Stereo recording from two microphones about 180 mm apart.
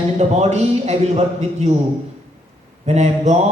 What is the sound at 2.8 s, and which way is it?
Speech, 40° right (ahead or behind).